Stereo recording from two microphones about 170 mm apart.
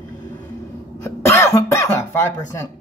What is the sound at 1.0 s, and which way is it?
Cough, 15° left (ahead or behind).